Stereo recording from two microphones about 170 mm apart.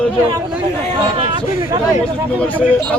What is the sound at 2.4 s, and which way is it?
Speech, 10° left (ahead or behind).